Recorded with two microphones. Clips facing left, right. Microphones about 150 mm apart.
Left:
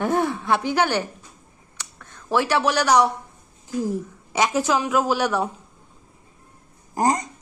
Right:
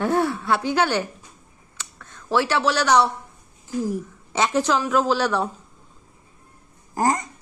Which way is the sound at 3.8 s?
15° left (ahead or behind).